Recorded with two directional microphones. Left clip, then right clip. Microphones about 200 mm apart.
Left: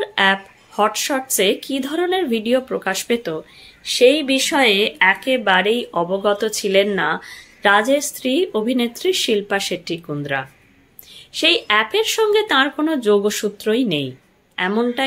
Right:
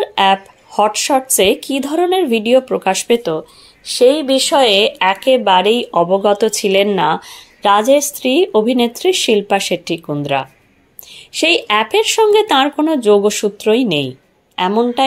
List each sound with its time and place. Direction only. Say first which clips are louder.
0.0 s a woman's voice: right 4 dB; 25° right (ahead or behind)